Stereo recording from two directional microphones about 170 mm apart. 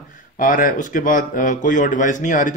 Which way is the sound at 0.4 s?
55° left (ahead or behind).